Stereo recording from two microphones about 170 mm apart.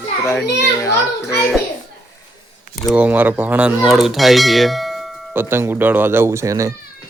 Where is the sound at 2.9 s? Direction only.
10° right (ahead or behind).